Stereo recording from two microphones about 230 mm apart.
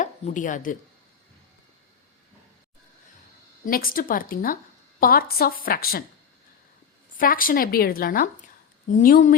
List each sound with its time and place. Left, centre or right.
0.0 s speech: left
3.7 s speech: left
7.2 s speech: left